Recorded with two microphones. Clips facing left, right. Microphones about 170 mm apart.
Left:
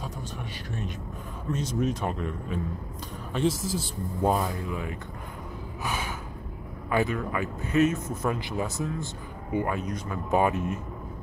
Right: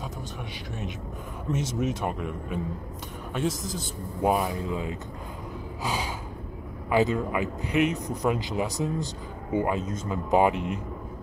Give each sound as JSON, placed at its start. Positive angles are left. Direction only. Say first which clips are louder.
{"t": 1.8, "sound": "speech", "louder": "even", "side_deg": -10}
{"t": 3.3, "sound": "a man's voice", "louder": "left 3 dB", "side_deg": 0}
{"t": 4.2, "sound": "speech", "louder": "right 1 dB", "side_deg": -10}
{"t": 5.8, "sound": "gasp", "louder": "right 2 dB", "side_deg": -15}
{"t": 7.0, "sound": "speech", "louder": "right 3 dB", "side_deg": -20}